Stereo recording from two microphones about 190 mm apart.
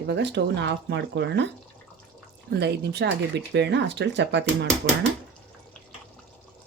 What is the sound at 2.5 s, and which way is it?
Speech, 60° right (ahead or behind).